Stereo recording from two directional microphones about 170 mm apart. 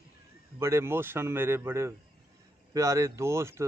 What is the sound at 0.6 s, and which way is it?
Speech, 15° right (ahead or behind).